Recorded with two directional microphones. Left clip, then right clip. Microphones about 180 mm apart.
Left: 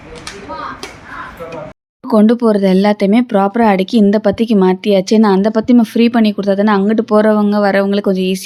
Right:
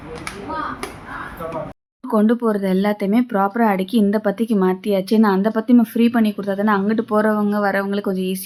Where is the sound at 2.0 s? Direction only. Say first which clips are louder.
Left 7 dB; 40° left (ahead or behind).